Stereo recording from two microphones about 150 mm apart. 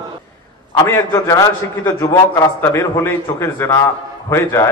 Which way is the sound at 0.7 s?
15° left (ahead or behind).